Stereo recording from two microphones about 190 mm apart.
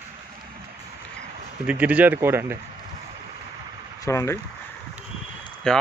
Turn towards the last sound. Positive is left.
turn(degrees=5)  # may be behind; listen again after turning